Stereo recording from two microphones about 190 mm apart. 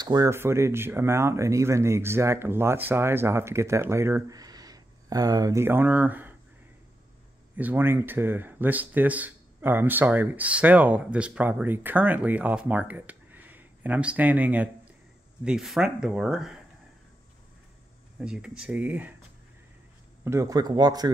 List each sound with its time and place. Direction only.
0.0 s speech: 20° right (ahead or behind)
7.5 s speech: 10° right (ahead or behind)
18.2 s speech: 5° right (ahead or behind)
20.2 s speech: 15° right (ahead or behind)